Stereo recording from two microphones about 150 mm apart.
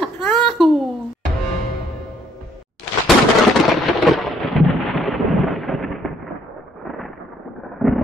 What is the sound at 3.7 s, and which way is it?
Thunder, centre (ahead or behind).